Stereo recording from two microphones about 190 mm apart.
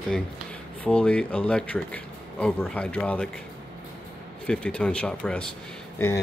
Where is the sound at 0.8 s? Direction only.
5° left (ahead or behind).